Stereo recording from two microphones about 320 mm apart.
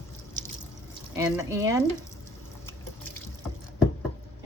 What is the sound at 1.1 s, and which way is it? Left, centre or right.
Speech, centre.